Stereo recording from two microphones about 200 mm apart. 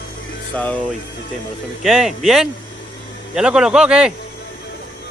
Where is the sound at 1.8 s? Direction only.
Centre (ahead or behind).